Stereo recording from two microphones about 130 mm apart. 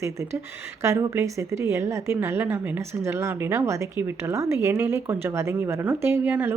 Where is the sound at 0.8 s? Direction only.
20° right (ahead or behind).